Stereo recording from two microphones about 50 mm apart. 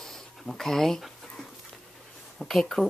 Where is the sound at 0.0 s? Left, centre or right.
Centre.